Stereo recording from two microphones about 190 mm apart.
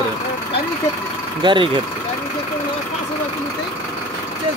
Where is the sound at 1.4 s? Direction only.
25° right (ahead or behind).